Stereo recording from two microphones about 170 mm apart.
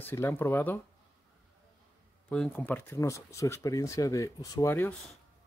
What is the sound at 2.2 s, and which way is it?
Speech, 10° left (ahead or behind).